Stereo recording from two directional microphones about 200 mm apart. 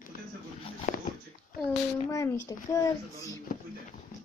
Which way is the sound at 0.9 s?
40° left (ahead or behind).